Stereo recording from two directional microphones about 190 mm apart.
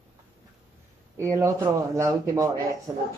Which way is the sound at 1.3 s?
15° right (ahead or behind).